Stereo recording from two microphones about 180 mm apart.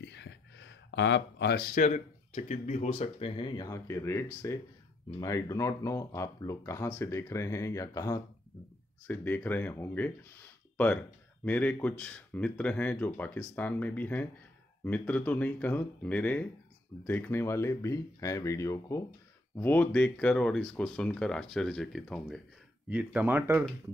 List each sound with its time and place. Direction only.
0.0 s speech: 75° left (ahead or behind); by 10.1 s 10° left (ahead or behind)
11.4 s speech: 10° left (ahead or behind); by 23.6 s 10° right (ahead or behind)